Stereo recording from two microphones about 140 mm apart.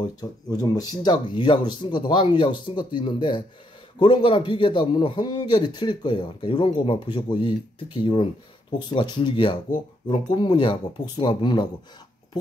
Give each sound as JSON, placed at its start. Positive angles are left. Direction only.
{"t": 0.0, "sound": "a man's voice", "side_deg": 30}